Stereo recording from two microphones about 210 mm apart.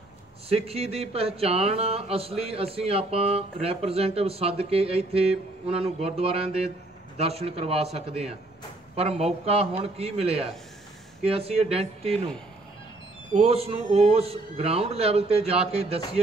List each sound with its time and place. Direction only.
0.5 s speech: 30° right (ahead or behind)
13.4 s speech: 30° right (ahead or behind)